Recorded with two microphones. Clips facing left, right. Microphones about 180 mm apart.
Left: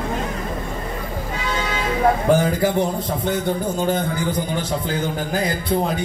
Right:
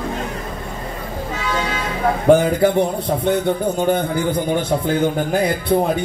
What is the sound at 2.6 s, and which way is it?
A man's voice, 60° right (ahead or behind).